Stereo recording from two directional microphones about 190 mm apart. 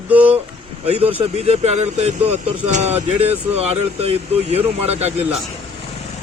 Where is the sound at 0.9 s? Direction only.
30° right (ahead or behind).